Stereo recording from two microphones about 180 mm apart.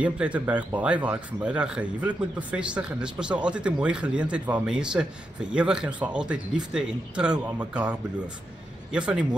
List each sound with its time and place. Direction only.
0.0 s a man's voice: 5° right (ahead or behind)
8.9 s speech: 5° right (ahead or behind)